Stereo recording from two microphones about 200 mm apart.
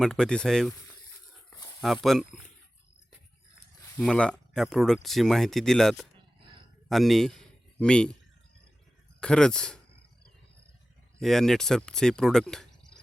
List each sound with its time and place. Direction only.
0.0 s speech: 5° left (ahead or behind)
1.5 s a sound: 20° left (ahead or behind)
1.8 s speech: centre (ahead or behind)
3.9 s a man's voice: 5° left (ahead or behind)
9.2 s speech: 5° left (ahead or behind)
11.2 s speech: centre (ahead or behind)